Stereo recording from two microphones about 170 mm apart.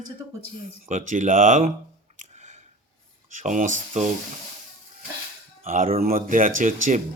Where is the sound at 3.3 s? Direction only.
45° right (ahead or behind).